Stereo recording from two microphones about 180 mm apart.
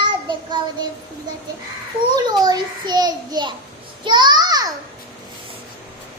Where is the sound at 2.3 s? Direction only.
20° right (ahead or behind).